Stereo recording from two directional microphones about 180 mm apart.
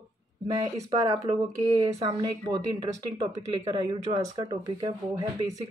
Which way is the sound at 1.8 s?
20° right (ahead or behind).